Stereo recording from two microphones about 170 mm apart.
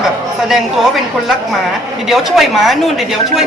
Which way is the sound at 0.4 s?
Centre (ahead or behind).